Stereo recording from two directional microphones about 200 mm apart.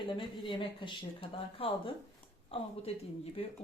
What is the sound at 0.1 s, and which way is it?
Speech, 25° left (ahead or behind).